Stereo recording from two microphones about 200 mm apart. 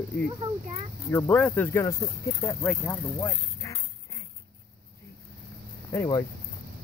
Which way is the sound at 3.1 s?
15° left (ahead or behind).